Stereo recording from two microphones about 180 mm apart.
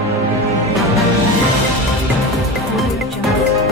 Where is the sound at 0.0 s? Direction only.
15° right (ahead or behind).